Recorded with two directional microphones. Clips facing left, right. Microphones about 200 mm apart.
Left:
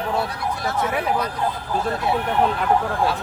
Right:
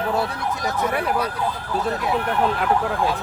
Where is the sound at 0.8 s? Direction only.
Centre (ahead or behind).